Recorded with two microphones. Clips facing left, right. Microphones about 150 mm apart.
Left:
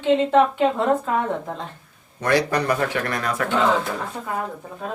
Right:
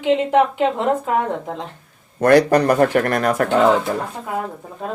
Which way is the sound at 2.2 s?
50° right (ahead or behind).